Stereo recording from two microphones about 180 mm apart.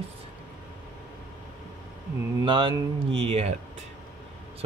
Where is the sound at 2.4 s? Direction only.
25° right (ahead or behind).